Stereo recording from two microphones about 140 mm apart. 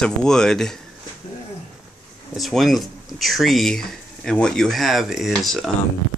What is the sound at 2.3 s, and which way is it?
Speech, centre (ahead or behind).